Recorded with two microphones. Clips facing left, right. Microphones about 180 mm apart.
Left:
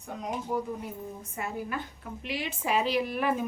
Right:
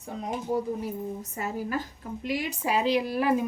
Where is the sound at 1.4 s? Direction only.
40° right (ahead or behind).